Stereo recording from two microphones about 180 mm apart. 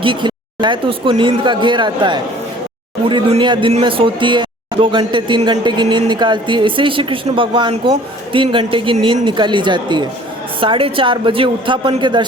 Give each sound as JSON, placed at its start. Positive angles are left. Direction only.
{"t": 0.0, "sound": "speech", "side_deg": -25}